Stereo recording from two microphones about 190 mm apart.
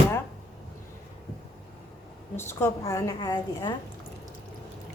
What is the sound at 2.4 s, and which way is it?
A woman's voice, 10° left (ahead or behind).